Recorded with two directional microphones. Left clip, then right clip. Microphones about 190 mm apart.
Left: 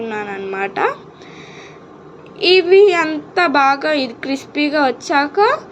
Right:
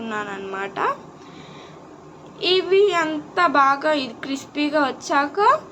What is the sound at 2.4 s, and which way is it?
A woman's voice, 20° left (ahead or behind).